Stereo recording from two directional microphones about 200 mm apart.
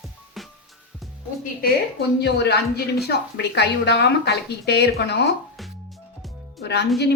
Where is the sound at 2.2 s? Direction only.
55° left (ahead or behind).